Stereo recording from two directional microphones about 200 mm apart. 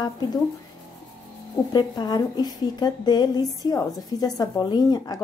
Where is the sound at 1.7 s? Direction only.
20° left (ahead or behind).